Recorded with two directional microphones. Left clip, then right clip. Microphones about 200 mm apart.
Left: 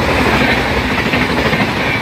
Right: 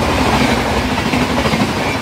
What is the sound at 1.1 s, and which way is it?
Vehicle, 55° right (ahead or behind).